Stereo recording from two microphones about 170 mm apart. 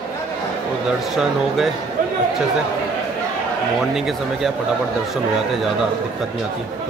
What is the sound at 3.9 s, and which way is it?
Speech, centre (ahead or behind).